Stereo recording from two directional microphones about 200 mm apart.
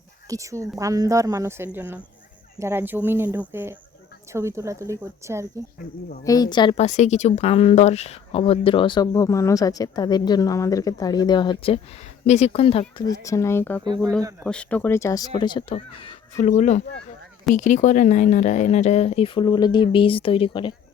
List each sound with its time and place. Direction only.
0.3 s speech: 15° right (ahead or behind)
6.2 s a woman's voice: 20° left (ahead or behind)
13.0 s speech: 15° left (ahead or behind)
13.8 s speech: 20° right (ahead or behind)
14.4 s a woman's voice: 5° left (ahead or behind); by 20.7 s 25° left (ahead or behind)